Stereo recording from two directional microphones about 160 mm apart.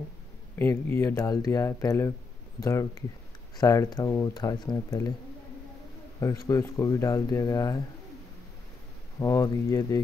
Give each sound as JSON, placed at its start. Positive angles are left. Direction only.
{"t": 0.6, "sound": "speech", "side_deg": 15}
{"t": 6.1, "sound": "speech", "side_deg": 20}
{"t": 9.2, "sound": "speech", "side_deg": 20}